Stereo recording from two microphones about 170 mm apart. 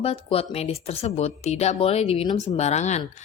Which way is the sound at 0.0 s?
35° left (ahead or behind).